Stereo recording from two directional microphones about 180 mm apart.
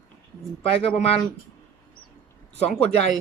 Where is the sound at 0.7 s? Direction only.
35° left (ahead or behind).